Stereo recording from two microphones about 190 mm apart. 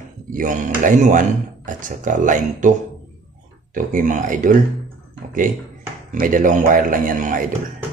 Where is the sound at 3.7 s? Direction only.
45° right (ahead or behind).